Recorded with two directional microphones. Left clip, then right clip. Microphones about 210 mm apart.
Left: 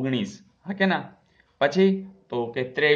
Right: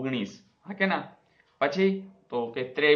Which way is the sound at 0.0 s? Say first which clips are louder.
Left 4 dB; 55° left (ahead or behind).